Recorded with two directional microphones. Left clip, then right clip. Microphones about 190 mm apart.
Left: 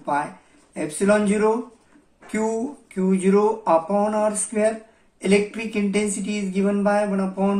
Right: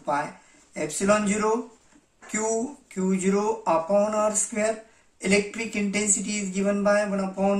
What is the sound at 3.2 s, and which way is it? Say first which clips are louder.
Speech: left 6 dB; 15° right (ahead or behind).